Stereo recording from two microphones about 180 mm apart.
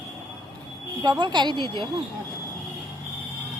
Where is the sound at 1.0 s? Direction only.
25° right (ahead or behind).